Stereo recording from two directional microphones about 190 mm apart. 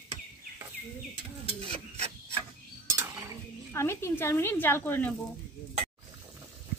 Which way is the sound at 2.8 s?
15° right (ahead or behind).